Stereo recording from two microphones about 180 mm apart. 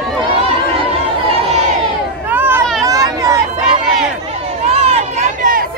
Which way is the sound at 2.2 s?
10° right (ahead or behind).